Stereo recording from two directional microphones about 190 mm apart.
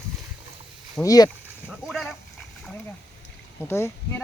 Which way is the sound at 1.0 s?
20° left (ahead or behind).